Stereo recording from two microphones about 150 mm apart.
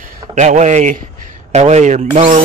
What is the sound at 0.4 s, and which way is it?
Speech, 50° right (ahead or behind).